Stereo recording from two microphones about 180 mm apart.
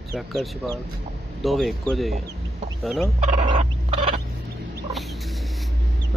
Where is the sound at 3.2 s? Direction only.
40° right (ahead or behind).